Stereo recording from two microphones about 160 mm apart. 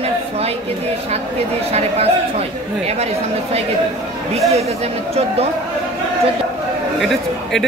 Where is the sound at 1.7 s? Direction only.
40° right (ahead or behind).